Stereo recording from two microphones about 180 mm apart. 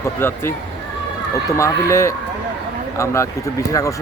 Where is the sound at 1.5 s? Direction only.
15° left (ahead or behind).